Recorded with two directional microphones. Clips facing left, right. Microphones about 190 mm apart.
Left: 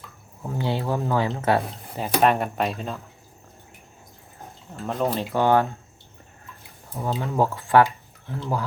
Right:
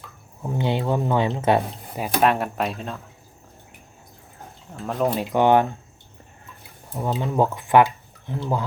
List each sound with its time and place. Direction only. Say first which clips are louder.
0.4 s speech: right 3 dB; 20° right (ahead or behind); by 3.0 s centre (ahead or behind)
4.8 s speech: right 2 dB; centre (ahead or behind)
5.3 s speech: right 3 dB; 20° right (ahead or behind)
6.9 s speech: right 2 dB; 15° right (ahead or behind)